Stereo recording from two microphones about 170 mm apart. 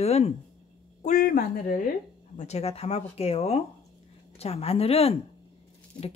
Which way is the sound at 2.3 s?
40° left (ahead or behind).